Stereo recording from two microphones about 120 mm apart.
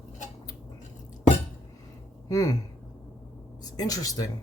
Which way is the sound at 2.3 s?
30° left (ahead or behind).